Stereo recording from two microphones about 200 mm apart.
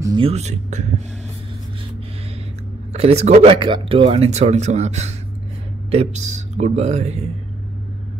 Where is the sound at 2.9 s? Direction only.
30° right (ahead or behind).